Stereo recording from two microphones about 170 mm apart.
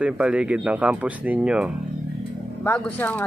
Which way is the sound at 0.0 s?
5° right (ahead or behind).